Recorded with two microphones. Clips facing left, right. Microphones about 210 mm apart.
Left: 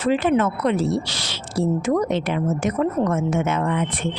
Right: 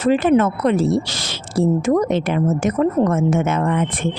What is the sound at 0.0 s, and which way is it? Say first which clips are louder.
A woman's voice: right 4 dB; 40° right (ahead or behind).